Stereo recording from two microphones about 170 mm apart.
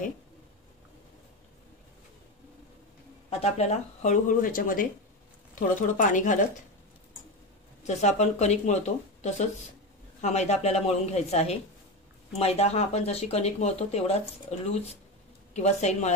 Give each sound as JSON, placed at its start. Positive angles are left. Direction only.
{"t": 3.3, "sound": "speech", "side_deg": 35}
{"t": 7.8, "sound": "speech", "side_deg": 40}